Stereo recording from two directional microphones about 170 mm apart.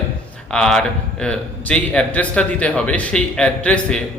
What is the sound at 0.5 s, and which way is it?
A man's voice, 5° left (ahead or behind).